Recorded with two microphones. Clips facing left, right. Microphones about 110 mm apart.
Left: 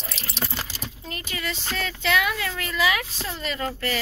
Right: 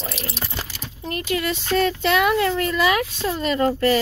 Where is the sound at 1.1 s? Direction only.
50° right (ahead or behind); by 3.9 s 35° right (ahead or behind).